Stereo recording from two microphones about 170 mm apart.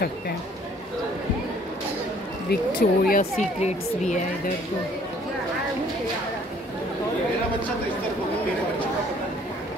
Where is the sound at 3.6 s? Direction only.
45° left (ahead or behind).